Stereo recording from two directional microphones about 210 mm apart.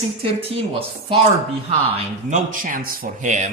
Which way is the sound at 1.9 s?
35° right (ahead or behind).